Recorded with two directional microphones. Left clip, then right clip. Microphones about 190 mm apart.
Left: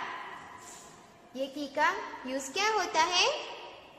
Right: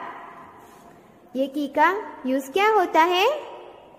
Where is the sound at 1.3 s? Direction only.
40° right (ahead or behind).